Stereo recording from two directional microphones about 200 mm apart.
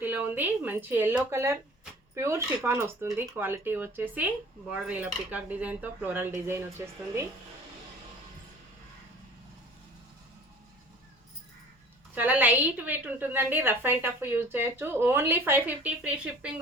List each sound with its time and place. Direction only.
0.0 s a woman's voice: 10° right (ahead or behind)
12.1 s a woman's voice: 10° right (ahead or behind)